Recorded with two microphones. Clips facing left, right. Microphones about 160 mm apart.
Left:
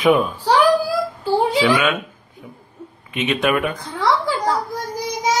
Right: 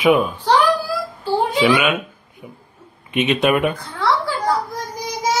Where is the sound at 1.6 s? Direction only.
10° right (ahead or behind).